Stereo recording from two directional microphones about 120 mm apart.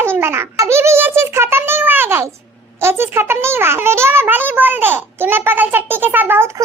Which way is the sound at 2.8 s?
20° right (ahead or behind).